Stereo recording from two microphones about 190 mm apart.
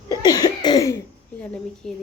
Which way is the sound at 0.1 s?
20° left (ahead or behind).